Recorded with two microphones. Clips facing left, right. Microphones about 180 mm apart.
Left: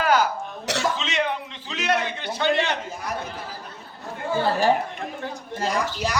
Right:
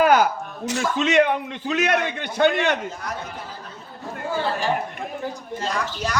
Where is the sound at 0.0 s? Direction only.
55° right (ahead or behind).